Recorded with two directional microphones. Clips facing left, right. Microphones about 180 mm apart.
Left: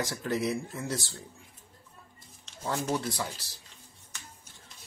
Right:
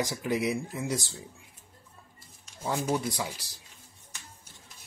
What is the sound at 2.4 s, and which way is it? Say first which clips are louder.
Speech: right 1 dB; 10° right (ahead or behind).